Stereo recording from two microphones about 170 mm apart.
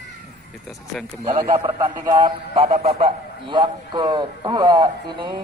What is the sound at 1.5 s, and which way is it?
A man's voice, 30° right (ahead or behind).